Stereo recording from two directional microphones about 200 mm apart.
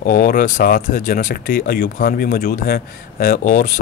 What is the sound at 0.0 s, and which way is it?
Speech, 50° left (ahead or behind).